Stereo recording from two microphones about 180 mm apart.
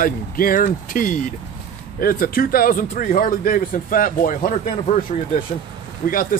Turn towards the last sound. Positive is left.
turn(degrees=50)  # may be behind; listen again after turning